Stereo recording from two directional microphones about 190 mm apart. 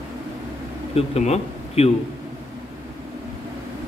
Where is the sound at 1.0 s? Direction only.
35° left (ahead or behind).